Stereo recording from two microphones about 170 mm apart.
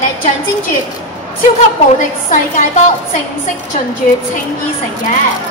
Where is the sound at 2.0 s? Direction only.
45° left (ahead or behind).